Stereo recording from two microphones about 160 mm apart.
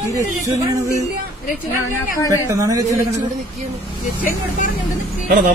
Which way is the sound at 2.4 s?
20° right (ahead or behind).